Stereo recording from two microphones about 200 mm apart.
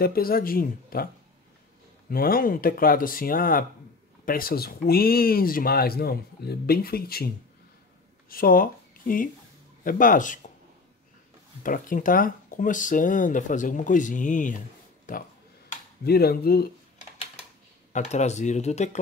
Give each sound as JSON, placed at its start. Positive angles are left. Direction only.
{"t": 0.0, "sound": "speech", "side_deg": 50}
{"t": 2.0, "sound": "speech", "side_deg": 45}
{"t": 8.3, "sound": "speech", "side_deg": 45}
{"t": 11.6, "sound": "speech", "side_deg": 45}
{"t": 17.9, "sound": "speech", "side_deg": 35}